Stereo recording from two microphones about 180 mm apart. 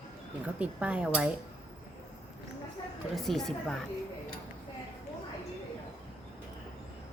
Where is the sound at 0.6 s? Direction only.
5° right (ahead or behind).